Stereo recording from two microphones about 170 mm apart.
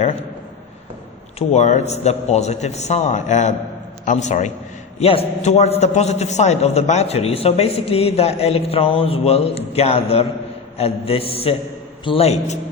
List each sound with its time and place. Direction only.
1.4 s a man's voice: 45° left (ahead or behind)